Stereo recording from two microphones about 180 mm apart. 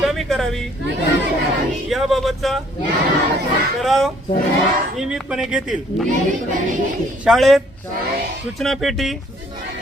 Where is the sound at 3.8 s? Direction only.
Centre (ahead or behind).